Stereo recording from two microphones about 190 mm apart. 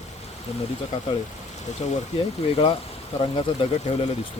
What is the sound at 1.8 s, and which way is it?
Speech, 35° left (ahead or behind).